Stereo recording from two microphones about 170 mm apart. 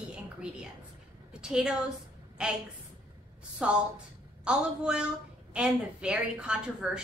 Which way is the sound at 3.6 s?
5° right (ahead or behind).